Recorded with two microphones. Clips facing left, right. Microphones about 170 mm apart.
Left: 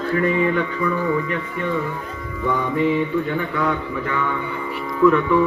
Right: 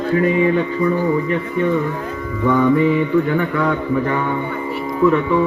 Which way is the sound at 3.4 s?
50° right (ahead or behind).